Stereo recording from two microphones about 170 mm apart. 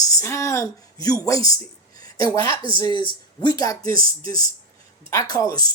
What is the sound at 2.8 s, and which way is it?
Speech, 25° left (ahead or behind).